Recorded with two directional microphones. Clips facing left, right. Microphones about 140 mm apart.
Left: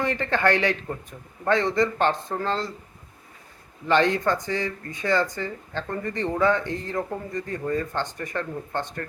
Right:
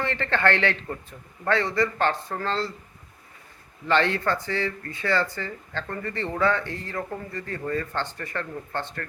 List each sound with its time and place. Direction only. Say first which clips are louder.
0.0 s speech: left 1 dB; 15° left (ahead or behind)
3.8 s speech: left 2 dB; 15° left (ahead or behind)